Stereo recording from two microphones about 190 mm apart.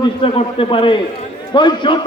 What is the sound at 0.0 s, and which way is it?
A man's voice, 30° left (ahead or behind).